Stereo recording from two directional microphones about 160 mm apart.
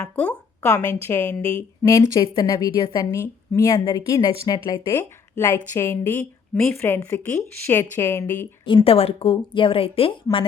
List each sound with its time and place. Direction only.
0.2 s speech: 10° left (ahead or behind)
1.9 s a woman's voice: 25° left (ahead or behind)
8.6 s speech: 35° left (ahead or behind)